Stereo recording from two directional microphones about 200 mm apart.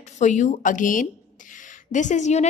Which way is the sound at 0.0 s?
35° left (ahead or behind).